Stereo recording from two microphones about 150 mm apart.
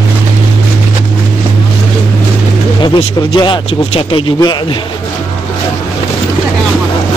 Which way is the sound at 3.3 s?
30° left (ahead or behind).